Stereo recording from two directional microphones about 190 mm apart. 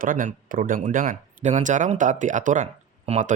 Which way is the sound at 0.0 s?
45° right (ahead or behind).